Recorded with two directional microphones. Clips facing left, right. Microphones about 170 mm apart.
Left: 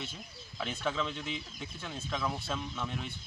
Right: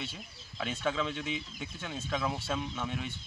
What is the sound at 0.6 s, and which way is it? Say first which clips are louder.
Speech: right 2 dB; 5° right (ahead or behind).